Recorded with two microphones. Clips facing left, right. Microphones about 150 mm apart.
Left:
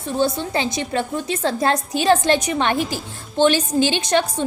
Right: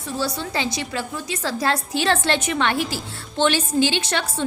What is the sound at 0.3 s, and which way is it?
A woman's voice, 20° left (ahead or behind).